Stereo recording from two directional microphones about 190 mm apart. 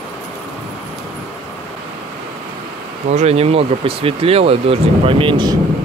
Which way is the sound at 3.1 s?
35° right (ahead or behind).